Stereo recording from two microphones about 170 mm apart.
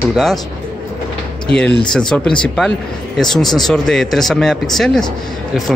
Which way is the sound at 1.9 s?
5° left (ahead or behind).